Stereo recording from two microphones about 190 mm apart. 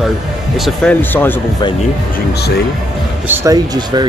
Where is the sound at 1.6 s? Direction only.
25° left (ahead or behind).